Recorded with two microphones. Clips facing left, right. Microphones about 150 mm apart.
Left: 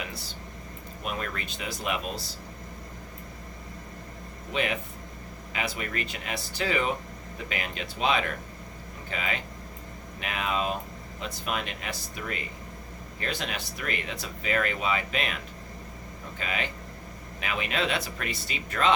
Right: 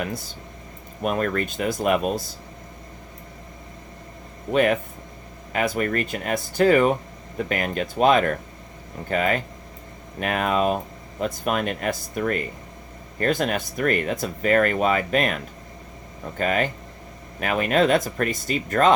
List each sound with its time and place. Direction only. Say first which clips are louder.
0.0 s speech: right 8 dB; 50° right (ahead or behind)
4.5 s speech: right 10 dB; 50° right (ahead or behind)
16.4 s speech: right 10 dB; 50° right (ahead or behind)